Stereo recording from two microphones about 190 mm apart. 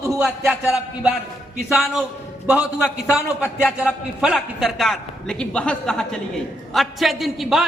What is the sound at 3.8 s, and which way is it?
A man's voice, 5° right (ahead or behind).